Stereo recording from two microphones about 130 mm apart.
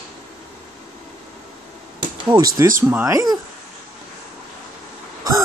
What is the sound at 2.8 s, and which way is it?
Speech, 20° right (ahead or behind).